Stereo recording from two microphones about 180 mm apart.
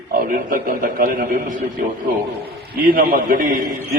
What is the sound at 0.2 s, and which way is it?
A man's voice, 55° right (ahead or behind).